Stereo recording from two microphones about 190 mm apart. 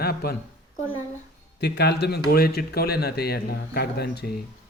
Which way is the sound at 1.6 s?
60° left (ahead or behind).